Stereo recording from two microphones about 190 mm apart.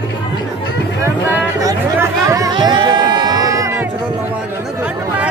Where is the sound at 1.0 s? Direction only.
15° right (ahead or behind).